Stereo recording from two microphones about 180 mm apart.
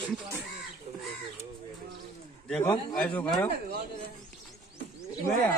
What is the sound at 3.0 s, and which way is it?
Speech, 5° left (ahead or behind).